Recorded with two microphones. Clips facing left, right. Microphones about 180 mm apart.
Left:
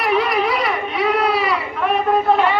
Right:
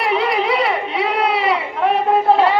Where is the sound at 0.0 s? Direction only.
25° right (ahead or behind).